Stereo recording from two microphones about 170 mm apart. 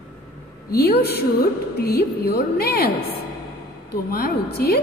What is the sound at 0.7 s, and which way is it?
A woman's voice, 65° left (ahead or behind).